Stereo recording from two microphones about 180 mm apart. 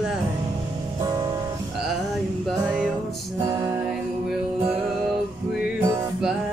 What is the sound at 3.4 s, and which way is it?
Music, 20° right (ahead or behind).